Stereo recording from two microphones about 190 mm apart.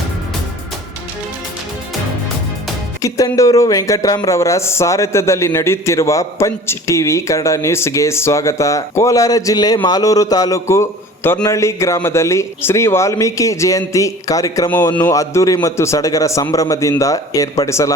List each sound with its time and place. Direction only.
3.0 s speech: 15° left (ahead or behind)